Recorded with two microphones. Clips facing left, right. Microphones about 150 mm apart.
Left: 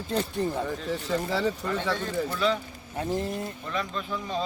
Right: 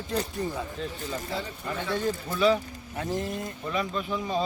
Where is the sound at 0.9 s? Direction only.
75° left (ahead or behind).